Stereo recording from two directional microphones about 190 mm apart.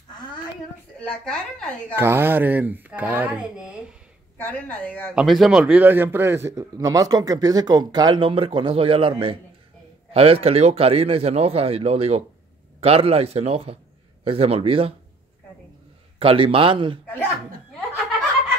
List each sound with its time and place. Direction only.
0.2 s a sound: 20° left (ahead or behind)
0.9 s speech: 5° left (ahead or behind)
2.0 s speech: 10° right (ahead or behind)
4.4 s a woman's voice: 10° left (ahead or behind); by 15.0 s 30° right (ahead or behind)
16.2 s a man's voice: 30° right (ahead or behind)